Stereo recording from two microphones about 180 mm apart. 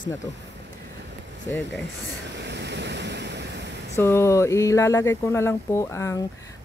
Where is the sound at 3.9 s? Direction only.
15° left (ahead or behind).